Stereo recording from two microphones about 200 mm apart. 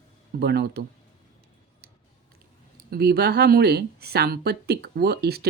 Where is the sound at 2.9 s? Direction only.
50° right (ahead or behind).